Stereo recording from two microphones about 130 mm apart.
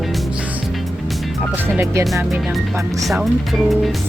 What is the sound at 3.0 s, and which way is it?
Speech, centre (ahead or behind).